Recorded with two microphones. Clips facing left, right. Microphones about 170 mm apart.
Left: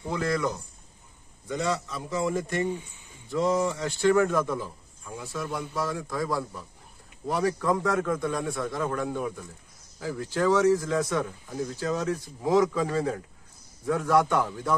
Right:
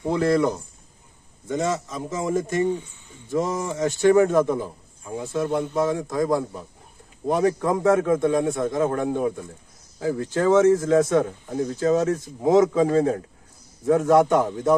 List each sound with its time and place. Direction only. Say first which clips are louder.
0.0 s a man's voice: right 7 dB; 25° right (ahead or behind)
11.1 s speech: right 8 dB; 45° right (ahead or behind)
11.7 s a man's voice: right 9 dB; 25° right (ahead or behind)